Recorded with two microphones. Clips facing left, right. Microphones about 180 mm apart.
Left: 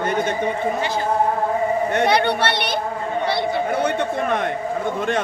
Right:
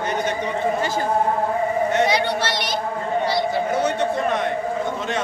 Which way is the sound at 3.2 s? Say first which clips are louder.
Left 2 dB; 60° left (ahead or behind).